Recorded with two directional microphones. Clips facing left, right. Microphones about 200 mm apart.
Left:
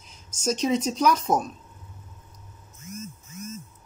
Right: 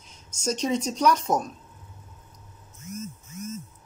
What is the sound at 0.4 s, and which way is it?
Speech, 5° left (ahead or behind).